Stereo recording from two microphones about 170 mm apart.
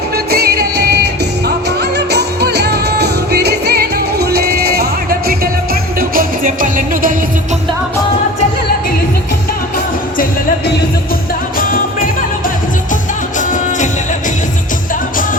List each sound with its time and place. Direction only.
0.1 s music: 70° right (ahead or behind)
11.5 s music: 55° left (ahead or behind)
13.4 s music: 45° left (ahead or behind)